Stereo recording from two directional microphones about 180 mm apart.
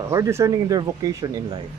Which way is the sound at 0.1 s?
15° right (ahead or behind).